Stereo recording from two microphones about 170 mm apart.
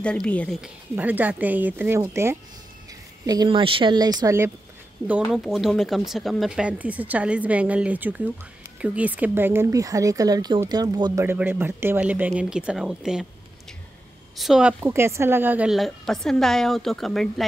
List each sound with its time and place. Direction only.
0.0 s a woman's voice: 5° left (ahead or behind)
0.6 s speech: 10° right (ahead or behind)
3.3 s speech: 25° right (ahead or behind)
5.0 s speech: 5° right (ahead or behind); by 11.2 s 25° right (ahead or behind)
11.2 s speech: 15° right (ahead or behind)
14.3 s speech: centre (ahead or behind)